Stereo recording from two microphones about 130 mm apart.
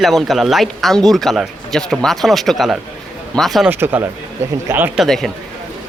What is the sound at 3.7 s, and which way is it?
Speech, 15° right (ahead or behind).